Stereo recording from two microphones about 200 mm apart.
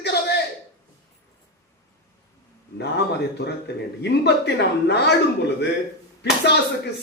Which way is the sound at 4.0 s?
55° left (ahead or behind).